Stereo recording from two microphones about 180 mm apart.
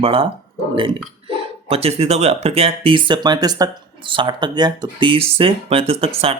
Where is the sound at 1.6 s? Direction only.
35° right (ahead or behind).